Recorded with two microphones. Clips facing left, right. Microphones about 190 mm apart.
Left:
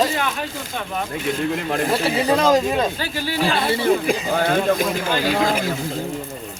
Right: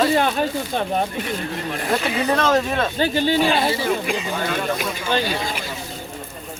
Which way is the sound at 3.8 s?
40° left (ahead or behind).